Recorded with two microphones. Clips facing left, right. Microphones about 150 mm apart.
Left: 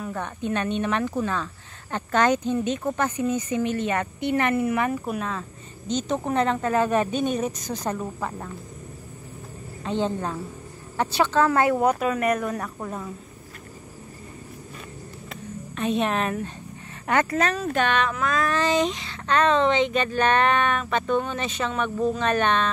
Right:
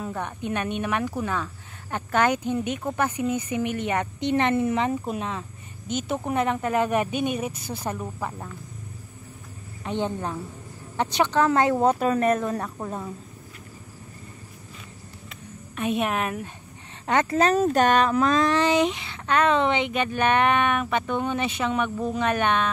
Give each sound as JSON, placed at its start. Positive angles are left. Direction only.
{"t": 0.1, "sound": "speech", "side_deg": -15}
{"t": 5.9, "sound": "speech", "side_deg": -10}
{"t": 9.8, "sound": "speech", "side_deg": -15}
{"t": 15.7, "sound": "speech", "side_deg": -10}
{"t": 17.0, "sound": "speech", "side_deg": -20}
{"t": 17.4, "sound": "speech", "side_deg": -35}
{"t": 18.5, "sound": "speech", "side_deg": -15}